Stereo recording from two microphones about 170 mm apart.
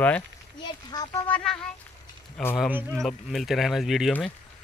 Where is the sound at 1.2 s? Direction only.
5° left (ahead or behind).